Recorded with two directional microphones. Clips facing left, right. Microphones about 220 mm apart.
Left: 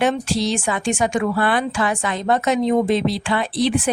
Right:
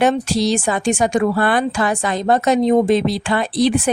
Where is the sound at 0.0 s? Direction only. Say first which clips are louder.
Right 3 dB; 40° right (ahead or behind).